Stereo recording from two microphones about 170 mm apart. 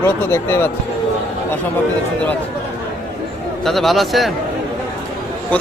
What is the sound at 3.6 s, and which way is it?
Speech, centre (ahead or behind).